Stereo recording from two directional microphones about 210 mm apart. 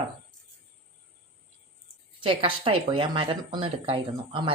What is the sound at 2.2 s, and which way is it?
Speech, 25° right (ahead or behind).